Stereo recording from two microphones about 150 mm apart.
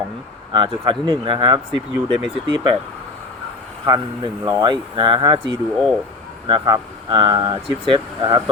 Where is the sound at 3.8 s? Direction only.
30° right (ahead or behind).